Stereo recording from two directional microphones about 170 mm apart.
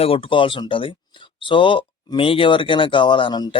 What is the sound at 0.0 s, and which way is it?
Speech, 35° left (ahead or behind).